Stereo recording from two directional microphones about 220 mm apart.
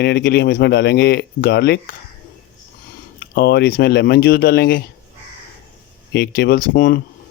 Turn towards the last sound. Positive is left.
turn(degrees=40)  # may be behind; listen again after turning